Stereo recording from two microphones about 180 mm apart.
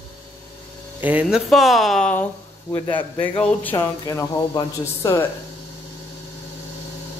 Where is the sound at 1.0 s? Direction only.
5° right (ahead or behind).